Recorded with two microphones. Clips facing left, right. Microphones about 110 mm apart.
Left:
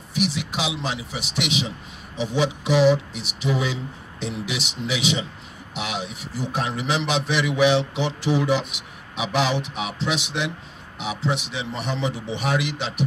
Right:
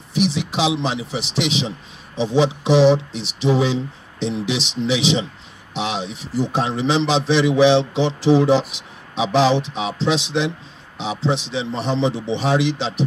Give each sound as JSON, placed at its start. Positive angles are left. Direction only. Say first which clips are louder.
{"t": 0.1, "sound": "a man's voice", "louder": "right 5 dB", "side_deg": -25}